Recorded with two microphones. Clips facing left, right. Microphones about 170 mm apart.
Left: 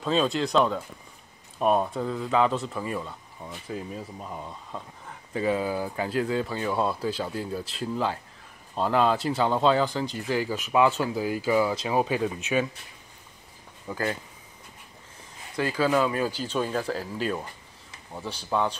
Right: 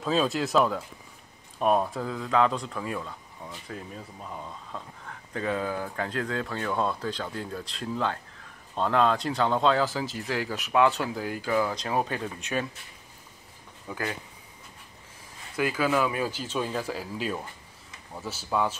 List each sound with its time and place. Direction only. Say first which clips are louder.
0.0 s speech: left 1 dB; centre (ahead or behind)
13.9 s speech: left 3 dB; centre (ahead or behind)
16.1 s speech: left 2 dB; 10° right (ahead or behind)